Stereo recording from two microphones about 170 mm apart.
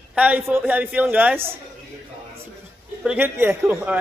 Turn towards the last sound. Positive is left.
turn(degrees=-15)  # may be behind; listen again after turning